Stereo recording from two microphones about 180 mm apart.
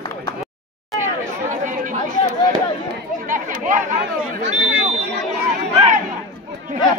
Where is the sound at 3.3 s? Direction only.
45° right (ahead or behind).